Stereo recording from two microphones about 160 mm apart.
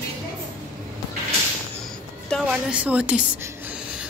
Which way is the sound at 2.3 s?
5° right (ahead or behind).